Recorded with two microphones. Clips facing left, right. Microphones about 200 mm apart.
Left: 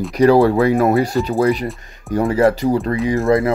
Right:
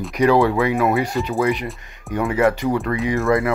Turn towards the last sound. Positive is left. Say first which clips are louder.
# left 3 dB
turn(degrees=35)  # may be behind; listen again after turning